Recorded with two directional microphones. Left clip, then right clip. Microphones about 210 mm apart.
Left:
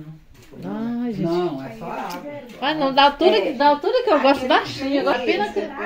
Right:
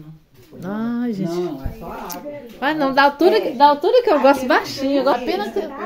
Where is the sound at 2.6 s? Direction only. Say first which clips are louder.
Right 1 dB; 20° right (ahead or behind).